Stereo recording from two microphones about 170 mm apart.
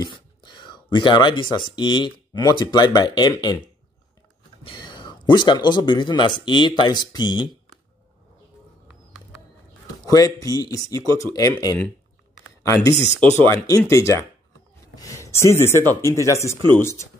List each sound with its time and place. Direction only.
0.0 s a sound: 25° left (ahead or behind)
1.8 s speech: 25° left (ahead or behind)
4.6 s speech: 25° left (ahead or behind)
10.0 s speech: 20° left (ahead or behind)
15.0 s a sound: 20° left (ahead or behind)
16.0 s speech: 15° left (ahead or behind)